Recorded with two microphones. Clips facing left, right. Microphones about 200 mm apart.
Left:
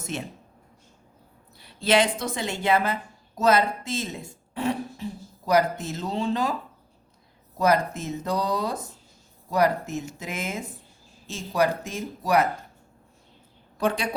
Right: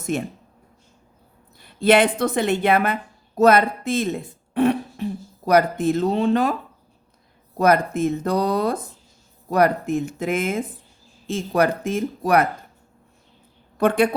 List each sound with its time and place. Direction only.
0.0 s speech: 55° right (ahead or behind)
1.5 s a woman's voice: 50° right (ahead or behind)
13.7 s a woman's voice: 55° right (ahead or behind)